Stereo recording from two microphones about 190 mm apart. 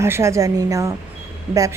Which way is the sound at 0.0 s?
15° right (ahead or behind).